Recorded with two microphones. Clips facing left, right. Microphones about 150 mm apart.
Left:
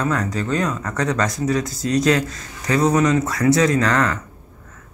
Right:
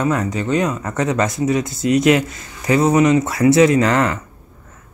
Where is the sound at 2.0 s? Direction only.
25° right (ahead or behind).